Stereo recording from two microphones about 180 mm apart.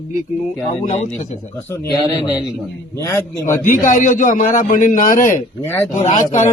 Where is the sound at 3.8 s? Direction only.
45° left (ahead or behind).